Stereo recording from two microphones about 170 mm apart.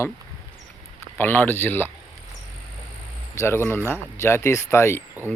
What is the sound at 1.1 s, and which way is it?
Speech, 10° left (ahead or behind).